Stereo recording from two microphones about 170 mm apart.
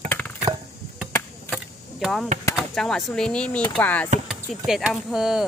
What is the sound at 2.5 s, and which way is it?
Speech, centre (ahead or behind).